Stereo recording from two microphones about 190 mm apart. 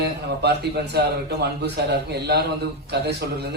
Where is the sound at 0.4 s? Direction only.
60° right (ahead or behind).